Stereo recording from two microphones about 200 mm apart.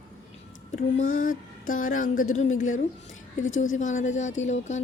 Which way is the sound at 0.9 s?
40° left (ahead or behind).